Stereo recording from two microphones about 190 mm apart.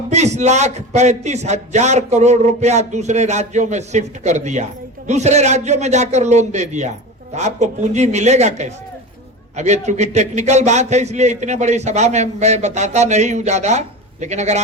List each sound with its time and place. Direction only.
0.1 s a man's voice: 35° right (ahead or behind)